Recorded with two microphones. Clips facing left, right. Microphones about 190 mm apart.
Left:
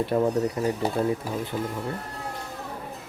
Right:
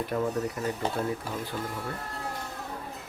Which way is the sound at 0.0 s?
30° left (ahead or behind).